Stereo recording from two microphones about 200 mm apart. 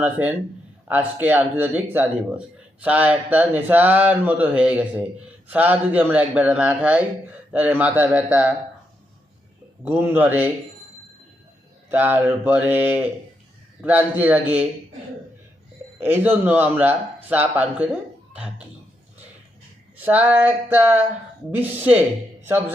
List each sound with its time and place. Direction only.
0.0 s speech: 10° right (ahead or behind)
9.8 s speech: 10° right (ahead or behind)
11.9 s speech: 10° right (ahead or behind)
16.0 s speech: 10° right (ahead or behind)
20.0 s speech: 10° right (ahead or behind)